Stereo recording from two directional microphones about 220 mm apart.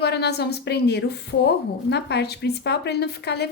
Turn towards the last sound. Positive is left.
turn(degrees=50)  # may be behind; listen again after turning